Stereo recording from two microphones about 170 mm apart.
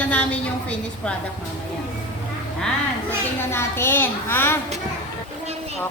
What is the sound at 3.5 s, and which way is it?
A woman's voice, 15° left (ahead or behind).